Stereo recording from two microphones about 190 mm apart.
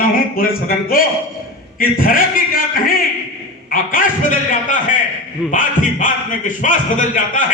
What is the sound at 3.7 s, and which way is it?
Speech, 45° left (ahead or behind).